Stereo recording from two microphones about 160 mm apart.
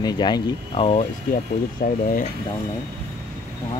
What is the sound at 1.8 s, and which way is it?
Cutlery, 75° left (ahead or behind).